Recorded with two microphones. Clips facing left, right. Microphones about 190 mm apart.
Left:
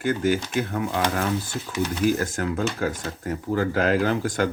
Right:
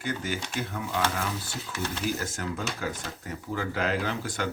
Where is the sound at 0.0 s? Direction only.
50° left (ahead or behind).